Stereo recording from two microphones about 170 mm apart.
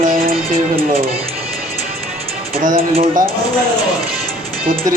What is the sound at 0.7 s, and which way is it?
Speech, 35° right (ahead or behind).